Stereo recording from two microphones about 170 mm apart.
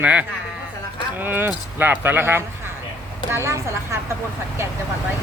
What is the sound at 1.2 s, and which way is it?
Speech, 10° right (ahead or behind).